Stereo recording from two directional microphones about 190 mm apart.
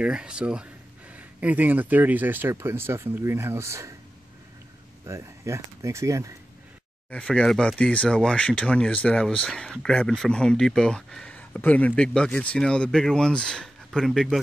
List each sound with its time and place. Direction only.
0.0 s speech: 5° right (ahead or behind)
5.0 s speech: 15° right (ahead or behind)
7.1 s speech: 5° left (ahead or behind)